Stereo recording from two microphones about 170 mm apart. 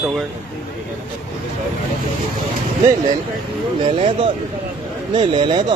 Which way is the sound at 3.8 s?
30° right (ahead or behind).